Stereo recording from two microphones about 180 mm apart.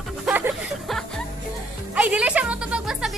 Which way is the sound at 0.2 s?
5° right (ahead or behind).